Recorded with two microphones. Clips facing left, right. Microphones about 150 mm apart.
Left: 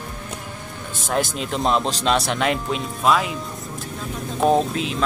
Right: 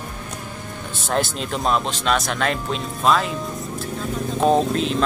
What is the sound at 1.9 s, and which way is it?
Speech, 35° left (ahead or behind).